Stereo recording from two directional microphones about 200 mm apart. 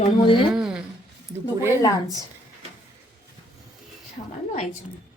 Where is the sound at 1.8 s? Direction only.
20° left (ahead or behind).